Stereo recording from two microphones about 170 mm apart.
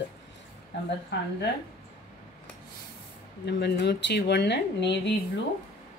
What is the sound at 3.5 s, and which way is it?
Speech, 80° left.